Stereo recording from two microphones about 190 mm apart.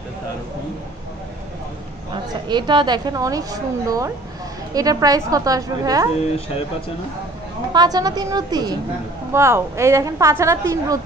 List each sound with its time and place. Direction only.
2.4 s a woman's voice: 25° right (ahead or behind)
7.7 s a woman's voice: 20° right (ahead or behind)